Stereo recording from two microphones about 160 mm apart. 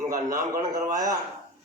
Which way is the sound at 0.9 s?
25° right (ahead or behind).